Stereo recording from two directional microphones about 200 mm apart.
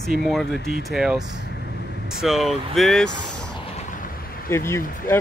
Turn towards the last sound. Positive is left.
turn(degrees=15)  # may be behind; listen again after turning